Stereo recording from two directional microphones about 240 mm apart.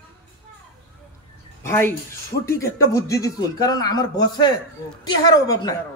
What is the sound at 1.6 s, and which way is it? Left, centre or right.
Speech, centre.